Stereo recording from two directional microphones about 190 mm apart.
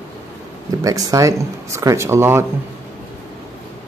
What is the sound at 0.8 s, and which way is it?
Speech, 20° right (ahead or behind).